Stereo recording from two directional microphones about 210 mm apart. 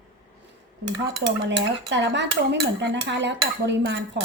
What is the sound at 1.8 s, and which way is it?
Dishes, 55° right (ahead or behind).